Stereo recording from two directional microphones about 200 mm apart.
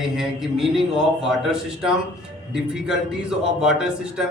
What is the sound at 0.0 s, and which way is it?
Speech, centre (ahead or behind).